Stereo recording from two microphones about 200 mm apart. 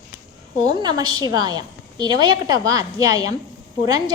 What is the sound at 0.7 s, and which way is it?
A woman's voice, 20° right (ahead or behind).